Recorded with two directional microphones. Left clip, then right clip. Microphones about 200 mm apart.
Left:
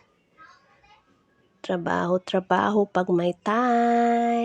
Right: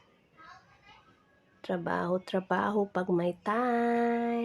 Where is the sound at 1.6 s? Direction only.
30° left (ahead or behind).